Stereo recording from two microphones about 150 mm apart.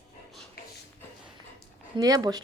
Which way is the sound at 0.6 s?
80° left.